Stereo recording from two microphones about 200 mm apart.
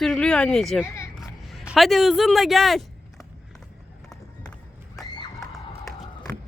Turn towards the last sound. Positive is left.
turn(degrees=20)  # may be behind; listen again after turning